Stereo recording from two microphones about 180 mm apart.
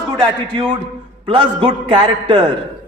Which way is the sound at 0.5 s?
25° right (ahead or behind).